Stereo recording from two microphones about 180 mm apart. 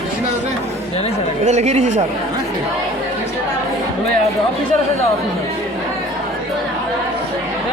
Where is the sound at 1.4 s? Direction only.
40° right (ahead or behind).